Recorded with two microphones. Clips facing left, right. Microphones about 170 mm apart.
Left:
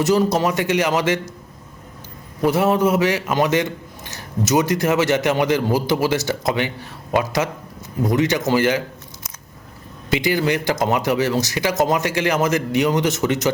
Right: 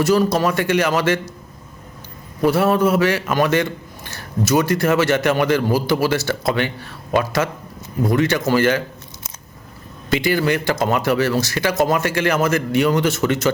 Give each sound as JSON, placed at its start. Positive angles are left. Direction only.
{"t": 0.0, "sound": "a man's voice", "side_deg": 20}
{"t": 2.4, "sound": "a man's voice", "side_deg": 20}
{"t": 10.1, "sound": "a man's voice", "side_deg": 15}